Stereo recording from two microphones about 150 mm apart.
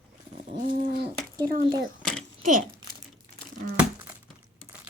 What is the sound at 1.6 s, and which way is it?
Speech, 30° right (ahead or behind).